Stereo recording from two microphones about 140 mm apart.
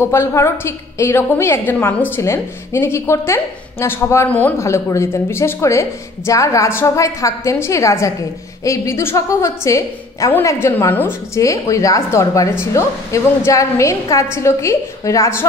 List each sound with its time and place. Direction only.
0.0 s a woman's voice: 20° left (ahead or behind)